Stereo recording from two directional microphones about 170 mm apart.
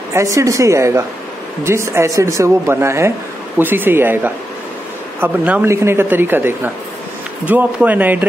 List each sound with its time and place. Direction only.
0.1 s speech: 20° right (ahead or behind)